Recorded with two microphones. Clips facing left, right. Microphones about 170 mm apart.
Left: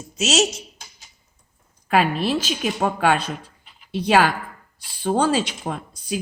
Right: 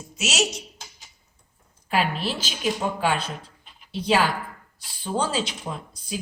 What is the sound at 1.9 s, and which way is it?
A woman's voice, 55° left (ahead or behind).